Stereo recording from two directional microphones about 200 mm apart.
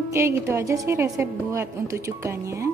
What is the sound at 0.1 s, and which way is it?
A woman's voice, 15° right (ahead or behind).